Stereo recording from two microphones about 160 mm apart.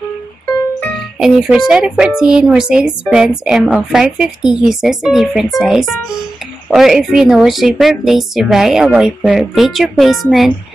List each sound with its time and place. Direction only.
1.2 s a woman's voice: 5° right (ahead or behind)